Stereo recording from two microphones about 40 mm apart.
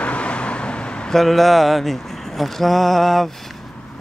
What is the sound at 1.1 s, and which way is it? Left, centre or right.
Speech, centre.